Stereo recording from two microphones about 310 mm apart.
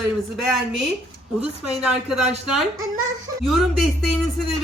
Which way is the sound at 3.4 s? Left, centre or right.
Centre.